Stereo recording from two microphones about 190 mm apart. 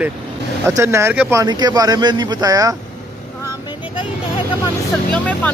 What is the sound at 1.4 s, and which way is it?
Speech, 20° right (ahead or behind).